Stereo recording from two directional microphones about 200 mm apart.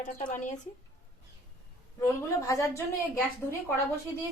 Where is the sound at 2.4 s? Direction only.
15° left (ahead or behind).